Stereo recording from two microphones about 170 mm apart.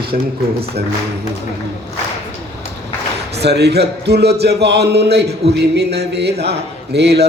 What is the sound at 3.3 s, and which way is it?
A man's voice, 75° right (ahead or behind).